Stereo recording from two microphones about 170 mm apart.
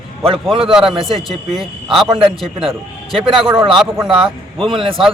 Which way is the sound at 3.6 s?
5° right (ahead or behind).